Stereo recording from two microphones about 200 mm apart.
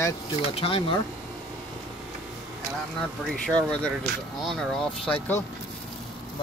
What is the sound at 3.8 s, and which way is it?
Speech, centre (ahead or behind).